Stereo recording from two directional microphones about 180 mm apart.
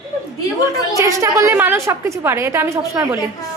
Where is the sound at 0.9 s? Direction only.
15° right (ahead or behind).